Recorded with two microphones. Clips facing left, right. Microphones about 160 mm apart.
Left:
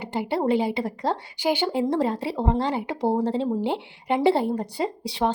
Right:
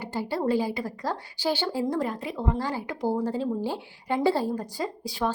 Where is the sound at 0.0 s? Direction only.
20° left (ahead or behind).